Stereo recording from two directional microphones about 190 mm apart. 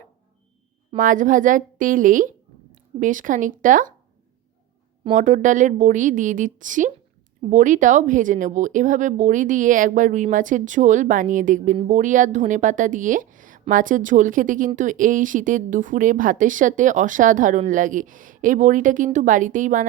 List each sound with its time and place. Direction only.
0.9 s speech: 45° right (ahead or behind)
5.1 s speech: 40° right (ahead or behind)